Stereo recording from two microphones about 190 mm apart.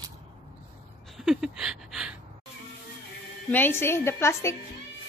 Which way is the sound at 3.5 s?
10° left (ahead or behind).